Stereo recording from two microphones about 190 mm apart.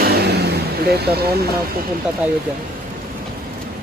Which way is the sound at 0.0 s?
60° right (ahead or behind).